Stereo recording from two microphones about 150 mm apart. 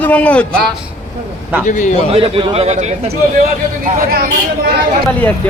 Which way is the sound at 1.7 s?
55° left (ahead or behind).